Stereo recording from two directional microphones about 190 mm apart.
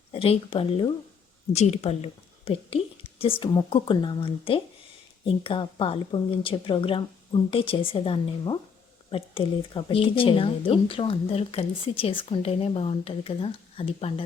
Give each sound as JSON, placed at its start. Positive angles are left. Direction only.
{"t": 0.1, "sound": "speech", "side_deg": 30}